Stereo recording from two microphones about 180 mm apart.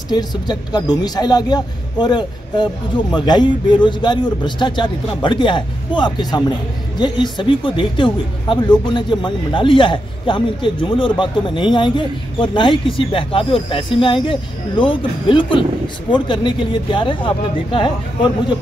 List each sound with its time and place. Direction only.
0.1 s a man's voice: 25° left (ahead or behind)